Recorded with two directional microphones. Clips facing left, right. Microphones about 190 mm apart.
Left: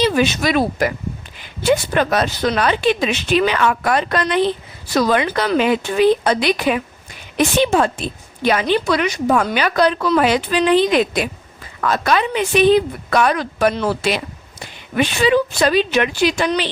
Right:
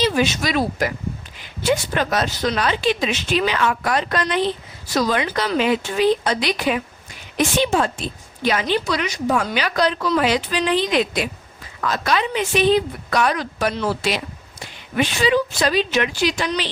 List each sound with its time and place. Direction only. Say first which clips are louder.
0.0 s a woman's voice: left 3 dB; 55° left (ahead or behind)